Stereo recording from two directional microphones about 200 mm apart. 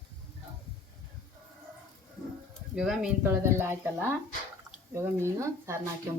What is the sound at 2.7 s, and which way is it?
Speech, 5° right (ahead or behind).